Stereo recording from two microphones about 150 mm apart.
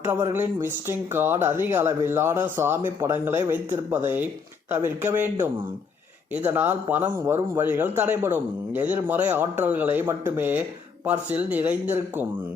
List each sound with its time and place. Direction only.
0.0 s speech: 15° right (ahead or behind)